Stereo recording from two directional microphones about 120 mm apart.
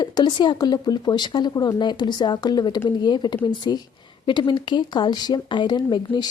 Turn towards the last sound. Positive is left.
turn(degrees=35)  # may be behind; listen again after turning